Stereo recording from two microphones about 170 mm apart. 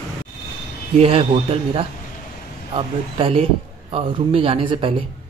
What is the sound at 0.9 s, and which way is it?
Speech, 35° right (ahead or behind).